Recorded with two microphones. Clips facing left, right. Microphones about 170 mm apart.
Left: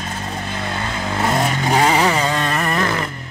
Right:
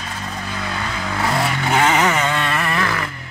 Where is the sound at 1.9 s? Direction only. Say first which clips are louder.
Left 1 dB; 30° left (ahead or behind).